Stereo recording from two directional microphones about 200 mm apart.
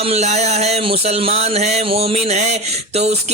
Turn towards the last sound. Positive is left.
turn(degrees=-30)  # may be behind; listen again after turning